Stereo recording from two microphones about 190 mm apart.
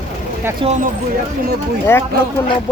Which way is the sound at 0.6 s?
35° right (ahead or behind).